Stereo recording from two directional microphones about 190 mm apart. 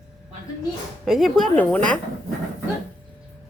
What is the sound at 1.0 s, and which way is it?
Speech, centre (ahead or behind).